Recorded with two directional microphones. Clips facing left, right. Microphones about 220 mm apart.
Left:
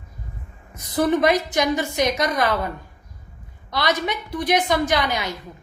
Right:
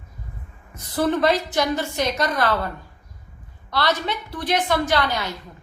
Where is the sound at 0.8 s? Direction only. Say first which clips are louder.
Left 2 dB; 15° left (ahead or behind).